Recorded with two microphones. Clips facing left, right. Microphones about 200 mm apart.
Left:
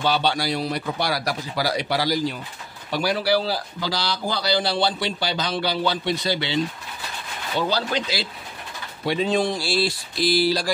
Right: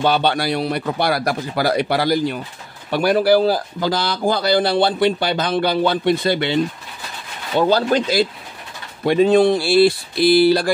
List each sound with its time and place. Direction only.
0.0 s a man's voice: 55° right (ahead or behind)